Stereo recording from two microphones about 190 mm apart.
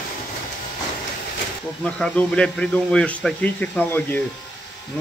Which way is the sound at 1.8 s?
5° left (ahead or behind).